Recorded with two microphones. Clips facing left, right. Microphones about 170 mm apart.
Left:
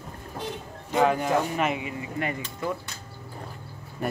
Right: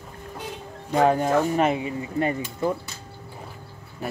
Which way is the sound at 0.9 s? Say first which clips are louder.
Right 3 dB; 40° right (ahead or behind).